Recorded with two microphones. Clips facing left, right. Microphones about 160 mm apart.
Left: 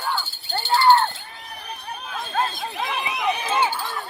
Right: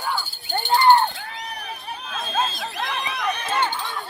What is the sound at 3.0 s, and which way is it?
Run, 20° left (ahead or behind).